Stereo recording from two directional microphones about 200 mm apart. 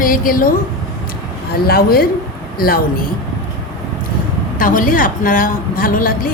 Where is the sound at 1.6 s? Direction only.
50° left (ahead or behind).